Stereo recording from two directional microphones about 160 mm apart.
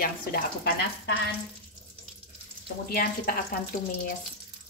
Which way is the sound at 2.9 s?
65° left (ahead or behind).